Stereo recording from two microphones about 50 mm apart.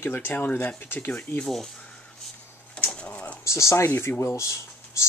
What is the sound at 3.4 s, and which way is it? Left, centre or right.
Speech, left.